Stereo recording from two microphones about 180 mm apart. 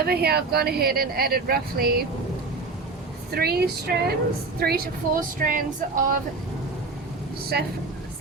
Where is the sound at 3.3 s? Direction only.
60° right (ahead or behind).